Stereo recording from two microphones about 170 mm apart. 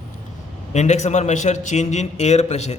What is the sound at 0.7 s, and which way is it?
A man's voice, 40° left (ahead or behind).